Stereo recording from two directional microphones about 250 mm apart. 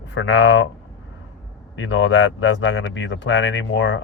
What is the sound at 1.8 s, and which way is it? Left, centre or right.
Speech, left.